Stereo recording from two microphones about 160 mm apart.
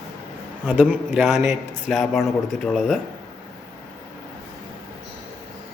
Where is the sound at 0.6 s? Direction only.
5° left (ahead or behind).